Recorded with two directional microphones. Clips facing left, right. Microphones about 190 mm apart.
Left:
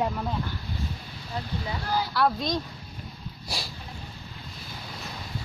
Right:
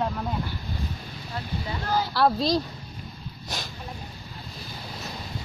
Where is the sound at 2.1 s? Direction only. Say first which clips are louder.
Right 4 dB; 35° right (ahead or behind).